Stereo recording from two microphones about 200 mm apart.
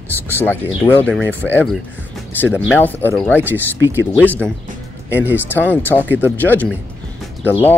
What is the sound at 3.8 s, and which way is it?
Speech, 10° right (ahead or behind).